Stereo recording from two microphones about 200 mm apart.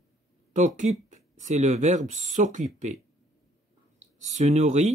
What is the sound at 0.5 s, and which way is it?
Speech, 35° right (ahead or behind).